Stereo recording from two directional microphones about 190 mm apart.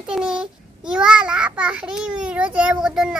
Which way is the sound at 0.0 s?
5° right (ahead or behind).